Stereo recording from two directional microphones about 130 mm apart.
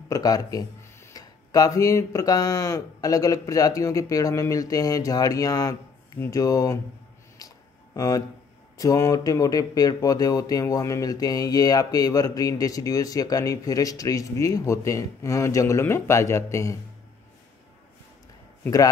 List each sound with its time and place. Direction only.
0.1 s speech: 30° left (ahead or behind)
7.3 s a sound: 25° left (ahead or behind)
8.7 s speech: 25° left (ahead or behind)